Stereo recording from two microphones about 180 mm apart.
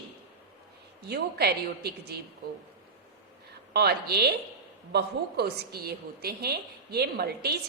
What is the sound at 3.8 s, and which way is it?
A woman's voice, 60° right (ahead or behind).